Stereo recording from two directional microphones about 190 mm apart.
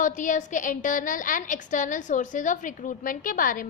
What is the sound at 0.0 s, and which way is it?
A woman's voice, 40° left (ahead or behind).